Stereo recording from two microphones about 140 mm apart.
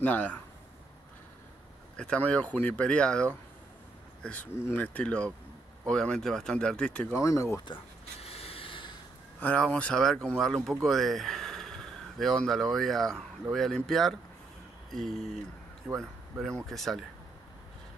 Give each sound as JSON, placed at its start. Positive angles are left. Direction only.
{"t": 0.0, "sound": "speech", "side_deg": 10}
{"t": 2.0, "sound": "speech", "side_deg": 10}
{"t": 7.2, "sound": "speech", "side_deg": 20}
{"t": 7.6, "sound": "a sound", "side_deg": 40}
{"t": 9.4, "sound": "speech", "side_deg": 10}
{"t": 14.9, "sound": "a sound", "side_deg": 0}
{"t": 15.9, "sound": "speech", "side_deg": 0}